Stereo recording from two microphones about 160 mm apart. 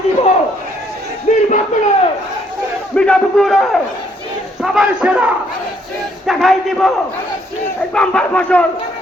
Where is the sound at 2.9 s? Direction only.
5° left (ahead or behind).